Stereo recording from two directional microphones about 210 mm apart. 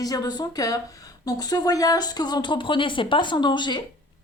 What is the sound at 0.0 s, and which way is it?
A woman's voice, 20° left (ahead or behind).